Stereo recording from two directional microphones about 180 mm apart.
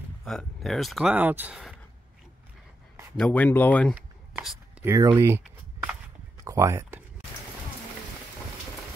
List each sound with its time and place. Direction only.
0.2 s speech: centre (ahead or behind)
3.2 s speech: 10° left (ahead or behind)
3.9 s writing: centre (ahead or behind)
4.8 s speech: 15° right (ahead or behind)
6.4 s speech: 15° right (ahead or behind)